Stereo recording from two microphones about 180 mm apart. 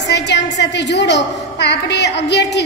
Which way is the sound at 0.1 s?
75° left (ahead or behind).